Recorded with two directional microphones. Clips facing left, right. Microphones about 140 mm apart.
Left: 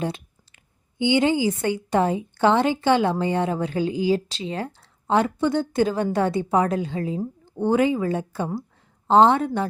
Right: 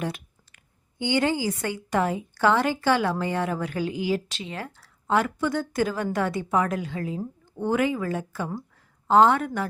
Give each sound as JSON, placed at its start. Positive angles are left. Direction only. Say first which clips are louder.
{"t": 0.0, "sound": "speech", "louder": "left 3 dB", "side_deg": 25}